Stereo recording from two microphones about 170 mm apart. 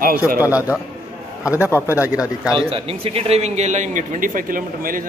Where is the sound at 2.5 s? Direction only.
35° right (ahead or behind); by 5.0 s 55° right (ahead or behind).